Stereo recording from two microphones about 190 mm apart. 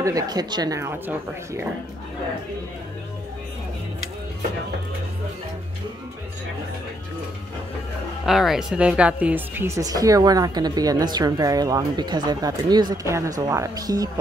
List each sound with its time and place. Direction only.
0.0 s a woman's voice: 20° right (ahead or behind)
8.3 s speech: centre (ahead or behind); by 14.2 s 20° right (ahead or behind)